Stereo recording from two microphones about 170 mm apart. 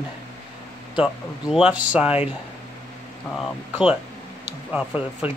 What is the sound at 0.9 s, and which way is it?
Speech, 5° right (ahead or behind).